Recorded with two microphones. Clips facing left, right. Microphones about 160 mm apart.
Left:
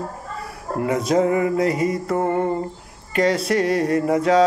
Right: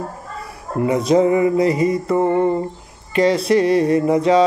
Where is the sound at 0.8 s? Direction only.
Centre (ahead or behind).